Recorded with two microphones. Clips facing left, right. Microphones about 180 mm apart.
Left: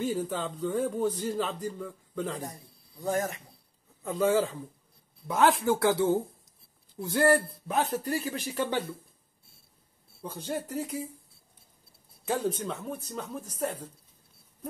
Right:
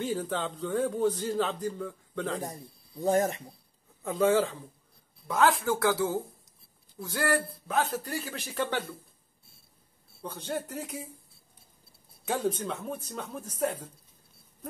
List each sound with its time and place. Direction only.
0.0 s speech: 5° left (ahead or behind)
3.0 s speech: 30° right (ahead or behind)
4.0 s speech: centre (ahead or behind)
5.3 s speech: 20° left (ahead or behind)
10.2 s speech: 5° left (ahead or behind)
12.3 s speech: centre (ahead or behind)